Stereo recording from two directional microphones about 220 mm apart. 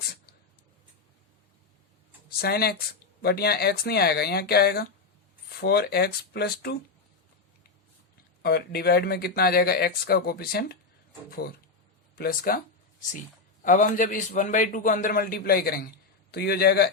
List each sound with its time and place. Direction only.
2.4 s speech: 45° left (ahead or behind)
8.4 s speech: 45° left (ahead or behind)
13.6 s a man's voice: 35° left (ahead or behind)